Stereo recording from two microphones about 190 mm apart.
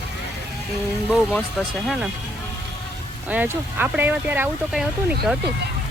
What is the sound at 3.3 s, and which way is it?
Speech, 10° right (ahead or behind).